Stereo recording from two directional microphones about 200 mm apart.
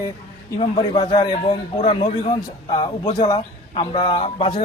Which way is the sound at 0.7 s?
20° left (ahead or behind).